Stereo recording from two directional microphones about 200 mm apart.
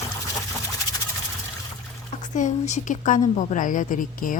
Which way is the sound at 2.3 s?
35° left (ahead or behind).